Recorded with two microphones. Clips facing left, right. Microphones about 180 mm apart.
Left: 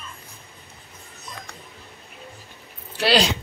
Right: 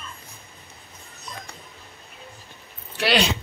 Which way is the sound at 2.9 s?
30° left (ahead or behind).